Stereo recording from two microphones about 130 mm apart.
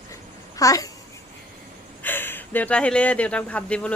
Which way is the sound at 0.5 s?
25° left (ahead or behind).